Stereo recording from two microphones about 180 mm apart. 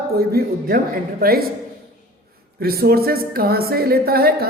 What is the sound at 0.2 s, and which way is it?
Speech, 55° right (ahead or behind).